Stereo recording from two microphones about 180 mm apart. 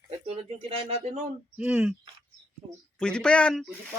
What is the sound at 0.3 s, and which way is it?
Speech, 35° right (ahead or behind).